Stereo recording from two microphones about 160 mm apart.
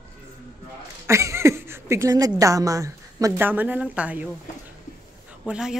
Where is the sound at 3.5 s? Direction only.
10° right (ahead or behind).